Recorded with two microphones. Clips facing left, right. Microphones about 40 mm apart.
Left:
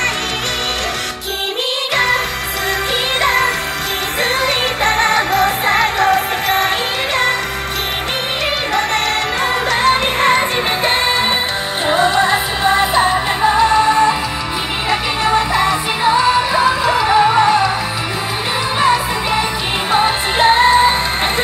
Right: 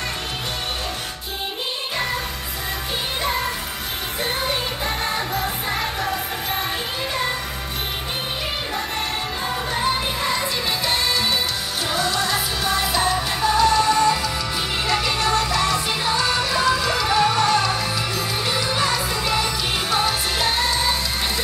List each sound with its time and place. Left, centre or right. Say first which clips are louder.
3.2 s music: left 10 dB; left
9.7 s music: left 8 dB; left
10.9 s music: left 5 dB; left
18.8 s music: left 8 dB; left